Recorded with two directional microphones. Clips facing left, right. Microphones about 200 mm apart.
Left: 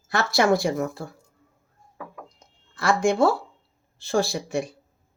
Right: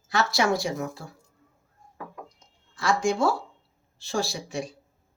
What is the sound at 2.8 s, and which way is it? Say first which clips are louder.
Speech: left 4 dB; 60° left (ahead or behind).